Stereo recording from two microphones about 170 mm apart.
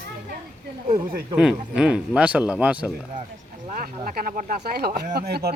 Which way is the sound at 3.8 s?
60° right (ahead or behind).